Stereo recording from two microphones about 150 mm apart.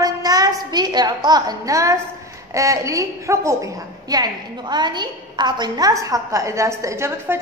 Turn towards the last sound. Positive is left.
turn(degrees=-20)  # may be behind; listen again after turning